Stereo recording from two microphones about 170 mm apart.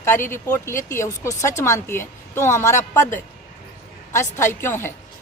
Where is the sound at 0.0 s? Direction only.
15° left (ahead or behind).